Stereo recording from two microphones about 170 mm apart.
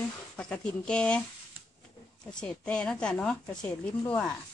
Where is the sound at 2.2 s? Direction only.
5° left (ahead or behind).